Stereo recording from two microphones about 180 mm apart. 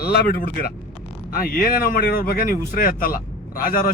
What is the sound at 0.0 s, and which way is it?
Speech, 60° left (ahead or behind).